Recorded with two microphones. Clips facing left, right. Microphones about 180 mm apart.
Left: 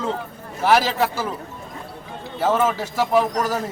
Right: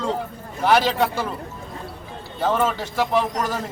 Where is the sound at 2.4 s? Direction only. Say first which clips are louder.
Left 2 dB; 5° left (ahead or behind).